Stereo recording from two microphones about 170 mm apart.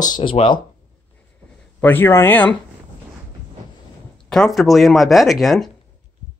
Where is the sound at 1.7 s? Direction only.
10° left (ahead or behind).